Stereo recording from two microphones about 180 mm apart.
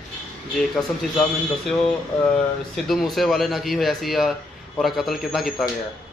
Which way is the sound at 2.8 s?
Centre (ahead or behind).